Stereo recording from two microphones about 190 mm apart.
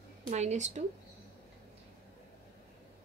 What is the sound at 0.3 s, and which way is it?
Speech, 35° right (ahead or behind).